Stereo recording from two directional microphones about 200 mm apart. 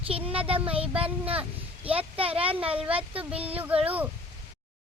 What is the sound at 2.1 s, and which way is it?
Speech, 30° right (ahead or behind).